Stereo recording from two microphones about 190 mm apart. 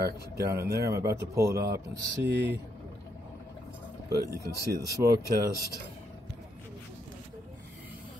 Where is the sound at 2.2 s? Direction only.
60° right (ahead or behind).